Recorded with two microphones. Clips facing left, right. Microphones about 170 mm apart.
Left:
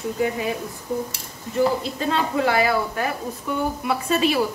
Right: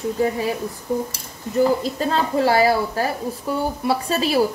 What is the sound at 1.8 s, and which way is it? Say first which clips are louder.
A woman's voice: right 2 dB; 35° right (ahead or behind).